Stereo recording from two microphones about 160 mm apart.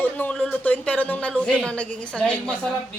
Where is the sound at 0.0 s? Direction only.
10° left (ahead or behind).